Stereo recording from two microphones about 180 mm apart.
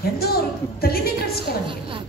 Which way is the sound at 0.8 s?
60° left (ahead or behind).